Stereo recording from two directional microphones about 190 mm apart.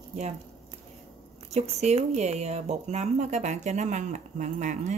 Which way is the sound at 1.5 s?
35° right (ahead or behind).